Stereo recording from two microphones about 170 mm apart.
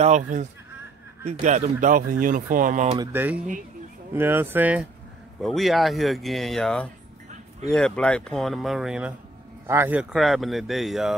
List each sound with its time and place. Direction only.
0.0 s speech: 45° right (ahead or behind)
3.0 s speech: 10° right (ahead or behind)
10.1 s speech: centre (ahead or behind)